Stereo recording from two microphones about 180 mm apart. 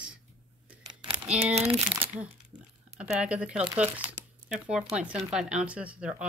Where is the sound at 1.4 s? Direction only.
35° right (ahead or behind).